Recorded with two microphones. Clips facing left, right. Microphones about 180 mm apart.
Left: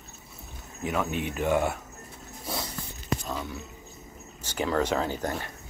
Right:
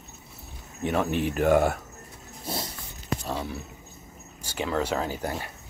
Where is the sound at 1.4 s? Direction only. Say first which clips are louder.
Right 4 dB; 45° right (ahead or behind).